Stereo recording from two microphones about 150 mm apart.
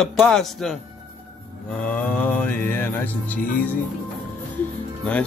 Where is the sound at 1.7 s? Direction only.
10° left (ahead or behind).